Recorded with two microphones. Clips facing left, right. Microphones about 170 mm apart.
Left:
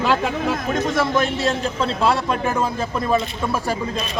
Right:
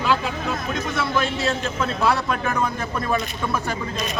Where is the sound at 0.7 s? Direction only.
45° left (ahead or behind); by 3.2 s 25° left (ahead or behind).